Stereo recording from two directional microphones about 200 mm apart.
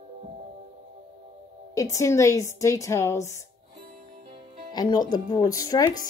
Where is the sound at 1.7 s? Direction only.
15° left (ahead or behind).